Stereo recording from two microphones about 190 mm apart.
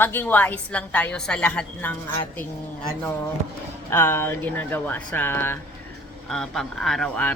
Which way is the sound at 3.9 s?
10° left (ahead or behind).